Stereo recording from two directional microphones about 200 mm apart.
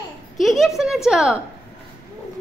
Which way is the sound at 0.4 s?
Centre (ahead or behind).